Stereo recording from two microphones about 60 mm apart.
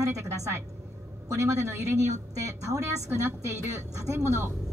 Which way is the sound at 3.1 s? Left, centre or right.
Right.